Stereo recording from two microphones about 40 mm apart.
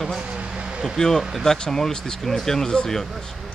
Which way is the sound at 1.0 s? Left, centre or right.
Left.